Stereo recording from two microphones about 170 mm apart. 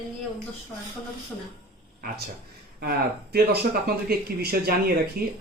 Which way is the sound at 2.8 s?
65° right (ahead or behind).